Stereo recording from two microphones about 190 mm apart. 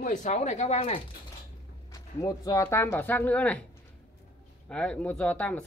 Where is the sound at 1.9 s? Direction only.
20° left (ahead or behind).